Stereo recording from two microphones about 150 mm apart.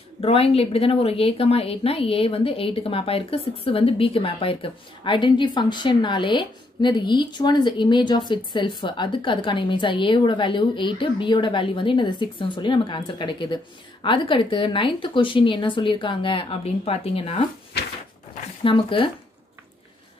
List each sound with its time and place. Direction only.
0.2 s a woman's voice: 40° left (ahead or behind)
18.6 s a woman's voice: 35° left (ahead or behind)